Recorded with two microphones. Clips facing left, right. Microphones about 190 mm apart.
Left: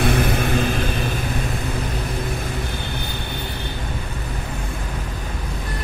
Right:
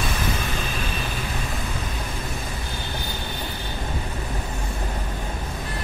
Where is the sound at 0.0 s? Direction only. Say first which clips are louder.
Left 8 dB; 60° left (ahead or behind).